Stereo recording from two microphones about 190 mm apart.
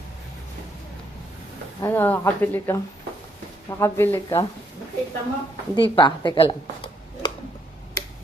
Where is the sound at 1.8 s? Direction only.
10° left (ahead or behind).